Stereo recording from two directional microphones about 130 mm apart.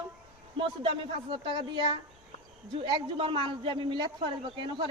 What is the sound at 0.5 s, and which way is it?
A man's voice, 40° right (ahead or behind).